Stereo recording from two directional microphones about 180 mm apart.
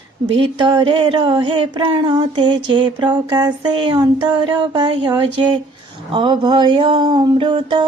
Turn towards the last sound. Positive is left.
turn(degrees=-25)  # may be behind; listen again after turning